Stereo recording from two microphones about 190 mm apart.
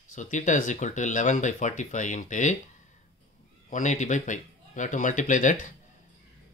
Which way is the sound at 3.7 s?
40° left (ahead or behind).